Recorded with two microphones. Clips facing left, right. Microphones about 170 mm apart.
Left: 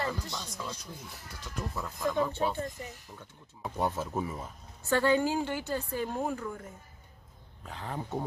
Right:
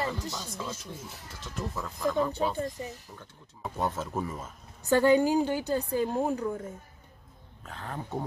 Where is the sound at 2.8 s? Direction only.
25° right (ahead or behind).